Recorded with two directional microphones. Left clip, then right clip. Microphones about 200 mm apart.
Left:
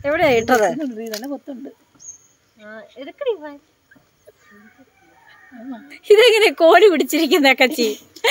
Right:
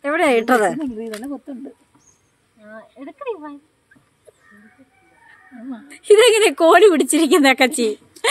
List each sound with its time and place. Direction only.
0.0 s a woman's voice: 25° right (ahead or behind)
0.7 s a woman's voice: 15° right (ahead or behind)
2.6 s speech: centre (ahead or behind)
5.7 s a woman's voice: 20° right (ahead or behind)